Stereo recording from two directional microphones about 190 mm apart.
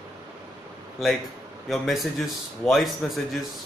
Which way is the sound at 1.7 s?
Centre (ahead or behind).